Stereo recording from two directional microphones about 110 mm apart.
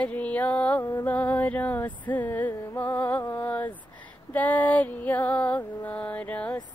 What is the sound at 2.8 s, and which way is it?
Music, 15° left (ahead or behind).